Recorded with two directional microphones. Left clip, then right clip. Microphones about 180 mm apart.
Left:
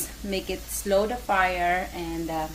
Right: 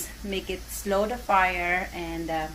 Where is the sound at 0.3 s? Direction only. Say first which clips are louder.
Left 2 dB; 20° left (ahead or behind).